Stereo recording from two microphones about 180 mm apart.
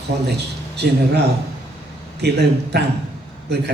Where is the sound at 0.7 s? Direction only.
65° right (ahead or behind).